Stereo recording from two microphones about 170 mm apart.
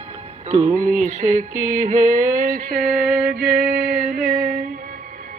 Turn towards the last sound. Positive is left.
turn(degrees=-5)  # may be behind; listen again after turning